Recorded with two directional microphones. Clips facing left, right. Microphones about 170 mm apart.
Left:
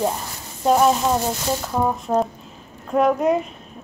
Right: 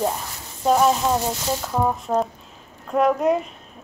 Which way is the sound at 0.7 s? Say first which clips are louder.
Left 1 dB; 5° left (ahead or behind).